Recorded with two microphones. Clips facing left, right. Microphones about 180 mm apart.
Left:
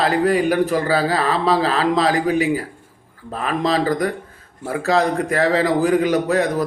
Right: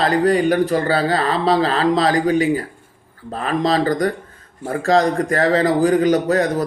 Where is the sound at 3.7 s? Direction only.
5° left (ahead or behind).